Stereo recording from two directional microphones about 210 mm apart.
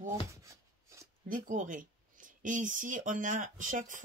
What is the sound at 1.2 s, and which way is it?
Speech, 40° right (ahead or behind).